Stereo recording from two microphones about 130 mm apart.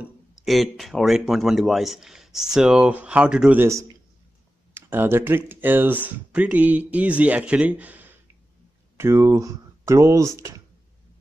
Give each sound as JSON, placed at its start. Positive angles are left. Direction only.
{"t": 0.0, "sound": "speech", "side_deg": 0}
{"t": 4.7, "sound": "speech", "side_deg": -15}